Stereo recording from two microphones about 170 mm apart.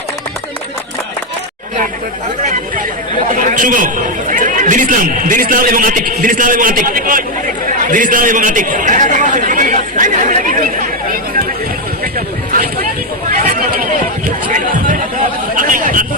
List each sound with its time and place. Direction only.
3.3 s a man's voice: 50° right (ahead or behind)
13.4 s a sound: 55° right (ahead or behind)
14.3 s chatter: 50° right (ahead or behind)